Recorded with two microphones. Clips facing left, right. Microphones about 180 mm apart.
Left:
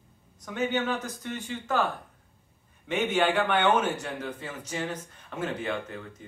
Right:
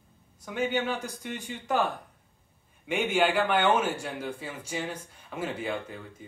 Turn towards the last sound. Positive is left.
turn(degrees=-10)  # may be behind; listen again after turning